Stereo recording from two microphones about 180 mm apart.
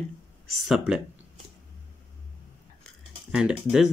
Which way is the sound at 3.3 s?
5° right (ahead or behind).